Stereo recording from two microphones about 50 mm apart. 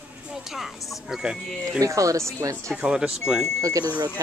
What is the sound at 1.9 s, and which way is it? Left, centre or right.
Speech, right.